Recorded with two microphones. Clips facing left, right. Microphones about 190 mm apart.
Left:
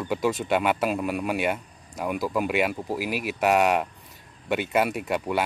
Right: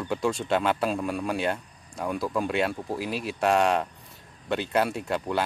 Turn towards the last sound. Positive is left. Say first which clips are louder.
# left 2 dB
turn(degrees=10)  # may be behind; listen again after turning